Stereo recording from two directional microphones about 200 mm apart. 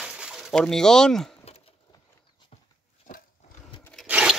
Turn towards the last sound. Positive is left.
turn(degrees=-5)  # may be behind; listen again after turning